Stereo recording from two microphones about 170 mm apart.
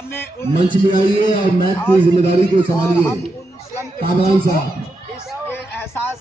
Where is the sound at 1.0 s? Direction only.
30° right (ahead or behind).